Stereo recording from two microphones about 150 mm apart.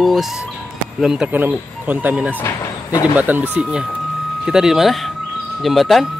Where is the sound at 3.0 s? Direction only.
10° right (ahead or behind).